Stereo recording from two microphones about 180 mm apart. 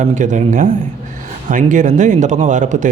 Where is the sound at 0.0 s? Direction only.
45° right (ahead or behind).